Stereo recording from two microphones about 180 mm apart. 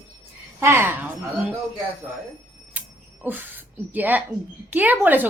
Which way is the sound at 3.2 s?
10° right (ahead or behind).